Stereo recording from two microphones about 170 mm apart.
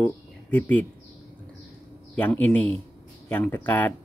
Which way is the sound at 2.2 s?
10° left (ahead or behind).